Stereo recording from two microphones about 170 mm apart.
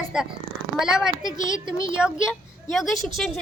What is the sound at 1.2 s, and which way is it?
Speech, 25° right (ahead or behind).